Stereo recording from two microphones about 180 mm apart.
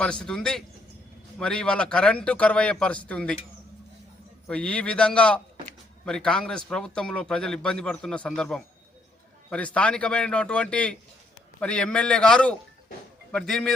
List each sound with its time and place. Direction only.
0.0 s speech: 5° left (ahead or behind)
4.4 s speech: 5° left (ahead or behind)